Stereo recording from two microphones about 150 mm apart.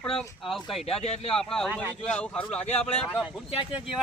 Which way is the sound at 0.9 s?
40° left (ahead or behind).